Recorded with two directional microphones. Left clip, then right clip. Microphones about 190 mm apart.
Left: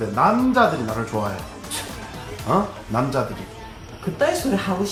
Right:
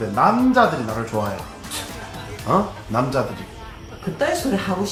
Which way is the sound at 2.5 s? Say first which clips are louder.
Right 1 dB; 5° right (ahead or behind).